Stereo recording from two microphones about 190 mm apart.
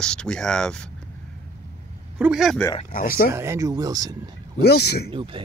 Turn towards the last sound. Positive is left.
turn(degrees=-25)  # may be behind; listen again after turning